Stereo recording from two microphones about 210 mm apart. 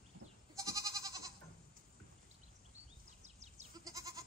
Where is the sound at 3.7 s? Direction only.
15° right (ahead or behind).